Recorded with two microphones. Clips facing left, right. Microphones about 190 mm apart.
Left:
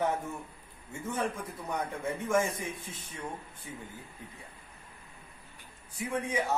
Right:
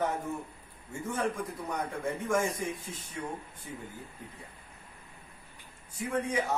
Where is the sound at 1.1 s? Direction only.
10° left (ahead or behind).